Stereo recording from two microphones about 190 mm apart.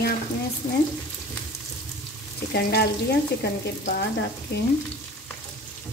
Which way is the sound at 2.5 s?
55° left (ahead or behind).